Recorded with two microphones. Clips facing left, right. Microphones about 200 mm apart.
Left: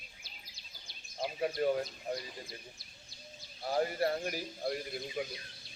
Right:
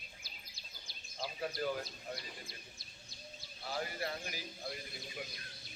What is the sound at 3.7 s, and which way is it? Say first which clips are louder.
Speech: left 9 dB; 50° left (ahead or behind).